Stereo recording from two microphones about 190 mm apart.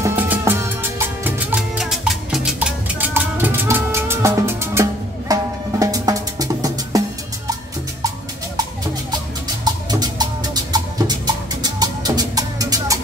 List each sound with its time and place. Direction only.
0.0 s music: 10° right (ahead or behind)
9.7 s music: 20° right (ahead or behind)